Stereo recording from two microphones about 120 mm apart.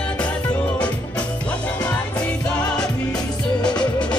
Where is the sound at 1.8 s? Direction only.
10° left (ahead or behind).